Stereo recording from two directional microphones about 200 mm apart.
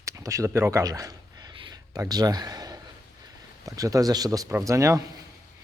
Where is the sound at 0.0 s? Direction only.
15° right (ahead or behind).